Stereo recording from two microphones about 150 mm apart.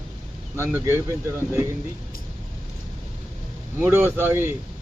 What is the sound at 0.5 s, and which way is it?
Speech, 15° right (ahead or behind).